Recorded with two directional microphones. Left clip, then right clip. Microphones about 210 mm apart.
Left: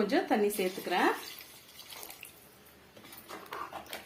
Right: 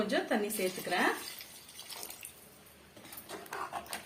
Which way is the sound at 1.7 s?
Centre (ahead or behind).